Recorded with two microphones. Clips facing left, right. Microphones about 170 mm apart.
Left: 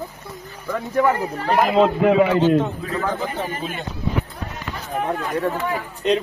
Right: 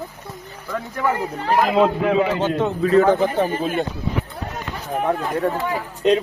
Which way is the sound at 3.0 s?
65° right (ahead or behind).